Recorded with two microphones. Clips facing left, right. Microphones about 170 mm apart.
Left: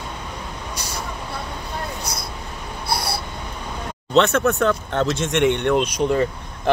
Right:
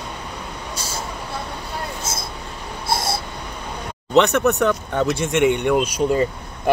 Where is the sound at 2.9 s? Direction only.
25° right (ahead or behind).